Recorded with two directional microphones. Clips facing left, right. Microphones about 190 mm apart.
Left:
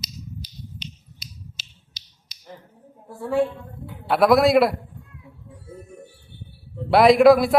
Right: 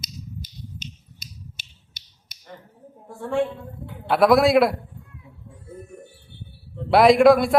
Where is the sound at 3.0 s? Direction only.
5° left (ahead or behind).